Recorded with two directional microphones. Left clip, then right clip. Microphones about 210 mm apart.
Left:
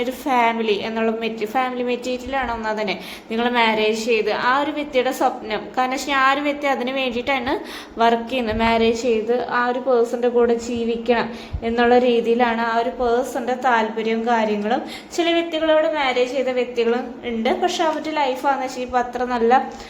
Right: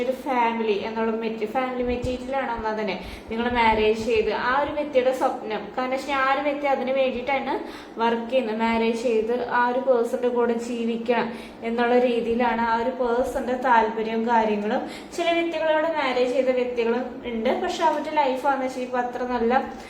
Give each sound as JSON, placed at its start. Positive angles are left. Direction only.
{"t": 0.3, "sound": "a woman's voice", "side_deg": 55}